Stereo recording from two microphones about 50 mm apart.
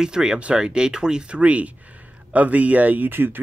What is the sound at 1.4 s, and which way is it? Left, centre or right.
Speech, right.